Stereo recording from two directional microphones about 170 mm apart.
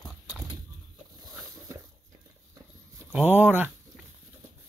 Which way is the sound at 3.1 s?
10° right (ahead or behind).